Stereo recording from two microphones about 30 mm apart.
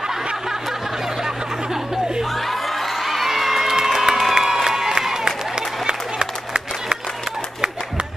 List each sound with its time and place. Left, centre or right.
1.2 s a sound: centre
2.3 s music: centre
3.7 s crowd: centre
4.6 s applause: centre